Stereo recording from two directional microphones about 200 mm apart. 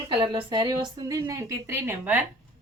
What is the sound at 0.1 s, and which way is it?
A woman's voice, 25° right (ahead or behind).